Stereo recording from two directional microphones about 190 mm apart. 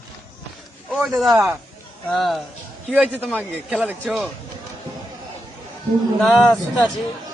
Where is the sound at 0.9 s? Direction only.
Centre (ahead or behind).